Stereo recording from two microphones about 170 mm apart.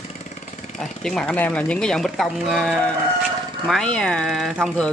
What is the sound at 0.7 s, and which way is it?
Speech, 5° left (ahead or behind).